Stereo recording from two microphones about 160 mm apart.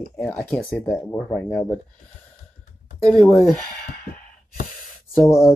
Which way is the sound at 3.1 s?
5° left (ahead or behind).